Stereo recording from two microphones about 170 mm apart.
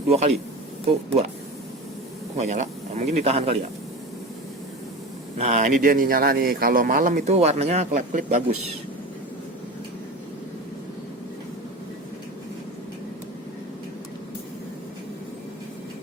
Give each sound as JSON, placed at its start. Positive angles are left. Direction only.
{"t": 0.1, "sound": "speech", "side_deg": -40}
{"t": 2.4, "sound": "speech", "side_deg": -45}
{"t": 5.4, "sound": "a man's voice", "side_deg": -45}